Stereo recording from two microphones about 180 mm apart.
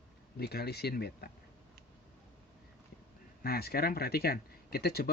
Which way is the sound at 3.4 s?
60° left (ahead or behind).